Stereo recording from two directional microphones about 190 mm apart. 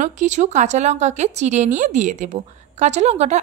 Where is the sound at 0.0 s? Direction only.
40° right (ahead or behind).